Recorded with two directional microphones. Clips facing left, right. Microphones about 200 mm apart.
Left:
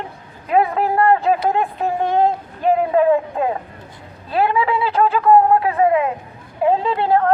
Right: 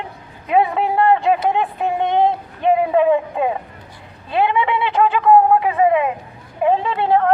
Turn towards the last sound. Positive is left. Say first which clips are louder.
# even
turn(degrees=5)  # may be behind; listen again after turning